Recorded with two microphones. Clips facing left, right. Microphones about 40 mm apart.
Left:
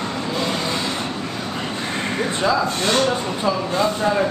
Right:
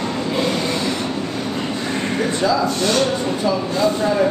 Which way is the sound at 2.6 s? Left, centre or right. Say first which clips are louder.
Right 1 dB; left.